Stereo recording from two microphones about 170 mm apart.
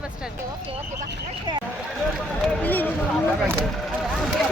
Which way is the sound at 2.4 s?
10° left (ahead or behind).